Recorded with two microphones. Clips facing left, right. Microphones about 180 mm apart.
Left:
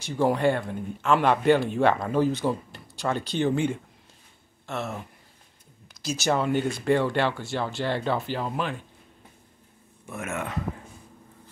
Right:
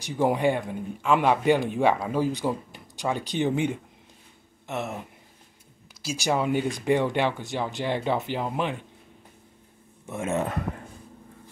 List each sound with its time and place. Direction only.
0.0 s speech: 15° right (ahead or behind)
6.0 s speech: 10° right (ahead or behind)
10.0 s speech: 25° right (ahead or behind)